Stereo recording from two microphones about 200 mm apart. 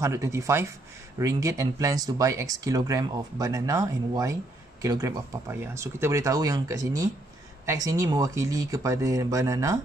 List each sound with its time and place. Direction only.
0.0 s speech: 15° right (ahead or behind)